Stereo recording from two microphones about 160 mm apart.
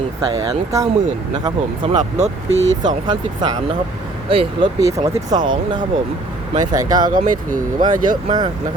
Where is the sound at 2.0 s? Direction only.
45° right (ahead or behind).